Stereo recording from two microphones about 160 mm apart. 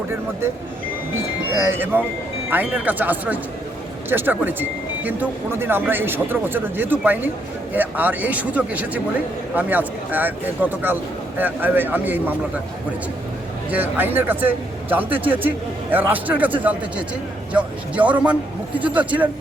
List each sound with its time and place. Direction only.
1.5 s speech: 15° right (ahead or behind)
13.7 s speech: 10° right (ahead or behind)
17.5 s speech: 10° right (ahead or behind)